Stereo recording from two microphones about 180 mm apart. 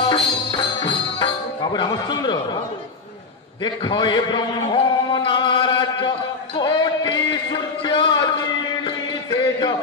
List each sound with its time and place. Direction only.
0.0 s music: 25° left (ahead or behind)
3.6 s a man's voice: 25° left (ahead or behind)
6.6 s a sound: 25° left (ahead or behind)